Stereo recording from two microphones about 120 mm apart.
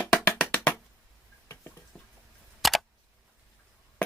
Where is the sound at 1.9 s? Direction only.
10° left (ahead or behind).